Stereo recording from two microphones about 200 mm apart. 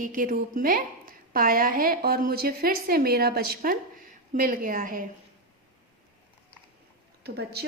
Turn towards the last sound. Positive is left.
turn(degrees=-55)  # may be behind; listen again after turning